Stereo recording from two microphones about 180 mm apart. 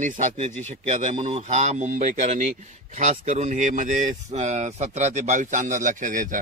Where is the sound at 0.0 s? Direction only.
40° right (ahead or behind).